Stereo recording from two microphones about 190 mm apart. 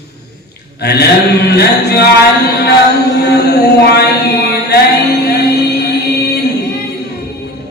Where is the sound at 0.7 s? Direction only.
60° left (ahead or behind).